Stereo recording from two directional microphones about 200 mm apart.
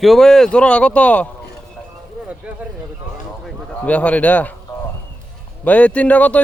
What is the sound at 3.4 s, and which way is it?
A man's voice, 5° left (ahead or behind).